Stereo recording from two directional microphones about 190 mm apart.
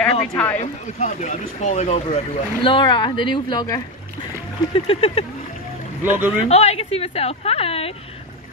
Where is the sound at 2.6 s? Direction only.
25° left (ahead or behind).